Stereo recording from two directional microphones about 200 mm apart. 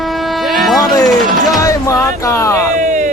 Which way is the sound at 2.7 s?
40° right (ahead or behind).